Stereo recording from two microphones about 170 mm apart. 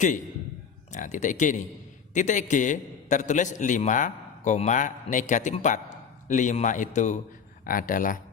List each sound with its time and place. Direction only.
0.9 s a man's voice: 45° left (ahead or behind)